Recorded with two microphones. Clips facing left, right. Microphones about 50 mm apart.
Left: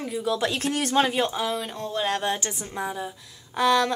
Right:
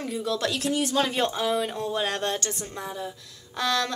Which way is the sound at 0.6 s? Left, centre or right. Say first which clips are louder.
Even; left.